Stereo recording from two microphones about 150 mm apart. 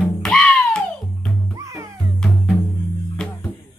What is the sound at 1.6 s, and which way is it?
Music, 20° right (ahead or behind).